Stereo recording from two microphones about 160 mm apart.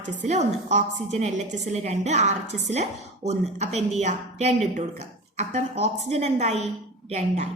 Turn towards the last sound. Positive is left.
turn(degrees=-45)  # may be behind; listen again after turning